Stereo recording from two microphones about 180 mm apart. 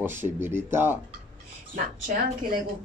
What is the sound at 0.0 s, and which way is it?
Speech, 15° right (ahead or behind).